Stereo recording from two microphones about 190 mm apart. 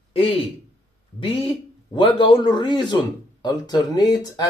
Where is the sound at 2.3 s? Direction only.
25° left (ahead or behind).